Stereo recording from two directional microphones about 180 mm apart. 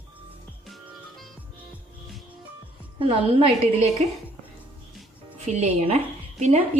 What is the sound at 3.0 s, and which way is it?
Speech, 30° right (ahead or behind).